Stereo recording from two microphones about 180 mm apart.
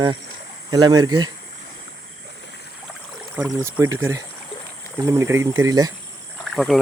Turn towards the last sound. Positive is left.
turn(degrees=0)  # may be behind; listen again after turning